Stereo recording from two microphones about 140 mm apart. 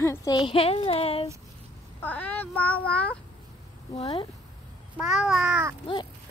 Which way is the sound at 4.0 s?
45° left (ahead or behind).